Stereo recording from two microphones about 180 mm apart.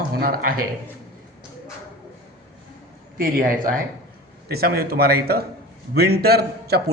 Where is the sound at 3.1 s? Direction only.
55° right (ahead or behind).